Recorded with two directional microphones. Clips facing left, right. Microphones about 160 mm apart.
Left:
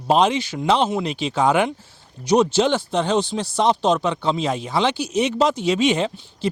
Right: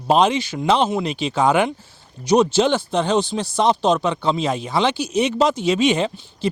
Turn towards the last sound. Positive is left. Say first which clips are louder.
# right 1 dB
turn(degrees=-10)  # may be behind; listen again after turning